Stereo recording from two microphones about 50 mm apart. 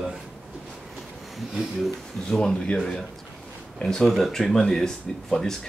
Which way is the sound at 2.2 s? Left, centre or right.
Centre.